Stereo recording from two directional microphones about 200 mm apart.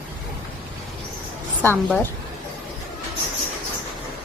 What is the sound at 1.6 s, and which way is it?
Speech, 10° left (ahead or behind).